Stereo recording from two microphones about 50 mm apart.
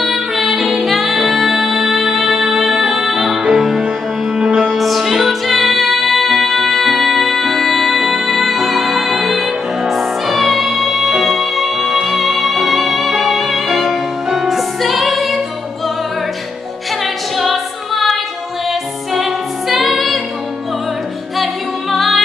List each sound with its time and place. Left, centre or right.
0.0 s music: centre
4.6 s music: centre
17.0 s singing: centre
19.7 s music: centre
21.9 s music: centre